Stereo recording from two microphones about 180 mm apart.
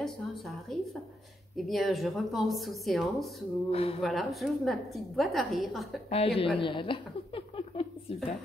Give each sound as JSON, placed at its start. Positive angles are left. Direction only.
{"t": 0.0, "sound": "a sound", "side_deg": 0}
{"t": 1.7, "sound": "a woman's voice", "side_deg": 0}
{"t": 3.7, "sound": "speech", "side_deg": 30}
{"t": 4.0, "sound": "a woman's voice", "side_deg": 0}
{"t": 6.0, "sound": "speech", "side_deg": 35}
{"t": 6.6, "sound": "a sound", "side_deg": 30}